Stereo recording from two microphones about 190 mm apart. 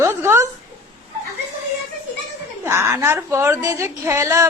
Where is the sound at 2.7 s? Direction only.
15° right (ahead or behind).